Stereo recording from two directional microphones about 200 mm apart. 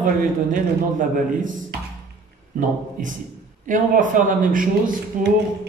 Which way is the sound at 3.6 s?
40° right (ahead or behind).